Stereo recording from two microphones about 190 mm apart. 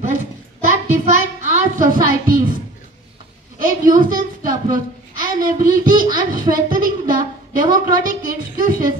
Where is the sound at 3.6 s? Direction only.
45° right (ahead or behind).